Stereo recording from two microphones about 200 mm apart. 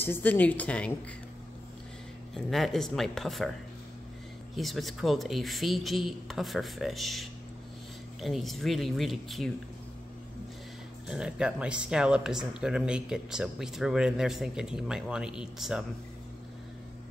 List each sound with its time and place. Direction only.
0.0 s a woman's voice: 10° left (ahead or behind)
2.3 s speech: centre (ahead or behind)
4.6 s speech: centre (ahead or behind)
11.1 s speech: 5° right (ahead or behind)